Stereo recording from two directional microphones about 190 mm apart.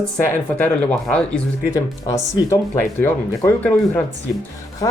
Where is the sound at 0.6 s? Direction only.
5° left (ahead or behind).